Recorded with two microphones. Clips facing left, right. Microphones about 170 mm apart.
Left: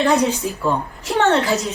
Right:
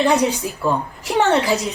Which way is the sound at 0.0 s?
10° right (ahead or behind).